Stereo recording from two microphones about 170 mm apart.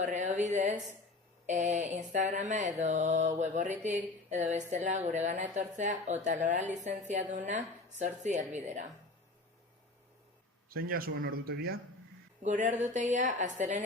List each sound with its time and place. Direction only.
0.0 s speech: 45° right (ahead or behind)
10.7 s speech: 60° right (ahead or behind)
12.4 s speech: 45° right (ahead or behind)